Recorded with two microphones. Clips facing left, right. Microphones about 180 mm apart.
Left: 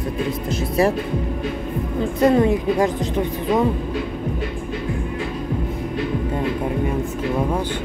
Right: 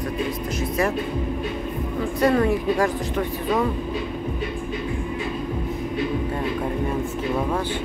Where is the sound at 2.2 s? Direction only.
20° left (ahead or behind).